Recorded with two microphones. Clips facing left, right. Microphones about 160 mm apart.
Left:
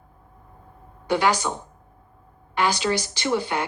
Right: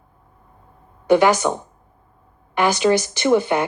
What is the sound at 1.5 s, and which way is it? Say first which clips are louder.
A woman's voice: right 7 dB; 50° right (ahead or behind).